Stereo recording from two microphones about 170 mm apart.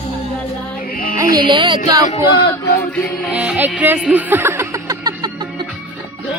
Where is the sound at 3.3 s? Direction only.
5° right (ahead or behind).